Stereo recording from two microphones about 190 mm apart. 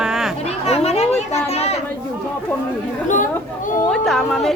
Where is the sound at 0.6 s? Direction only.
35° left (ahead or behind).